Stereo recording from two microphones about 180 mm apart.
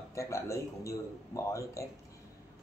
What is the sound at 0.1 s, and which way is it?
Speech, 15° left (ahead or behind).